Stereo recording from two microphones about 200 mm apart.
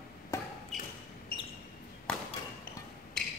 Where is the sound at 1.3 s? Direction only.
45° left (ahead or behind).